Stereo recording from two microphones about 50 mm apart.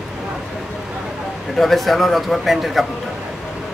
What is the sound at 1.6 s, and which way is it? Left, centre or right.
A man's voice, centre.